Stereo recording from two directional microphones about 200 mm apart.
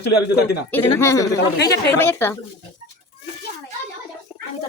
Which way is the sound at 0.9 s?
15° left (ahead or behind).